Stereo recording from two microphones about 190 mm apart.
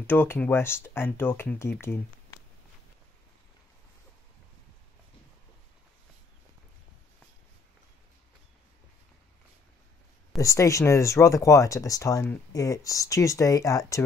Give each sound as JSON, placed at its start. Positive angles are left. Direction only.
{"t": 0.0, "sound": "speech", "side_deg": 10}
{"t": 10.4, "sound": "speech", "side_deg": 15}